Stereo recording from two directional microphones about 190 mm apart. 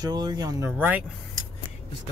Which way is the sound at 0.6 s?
10° right (ahead or behind).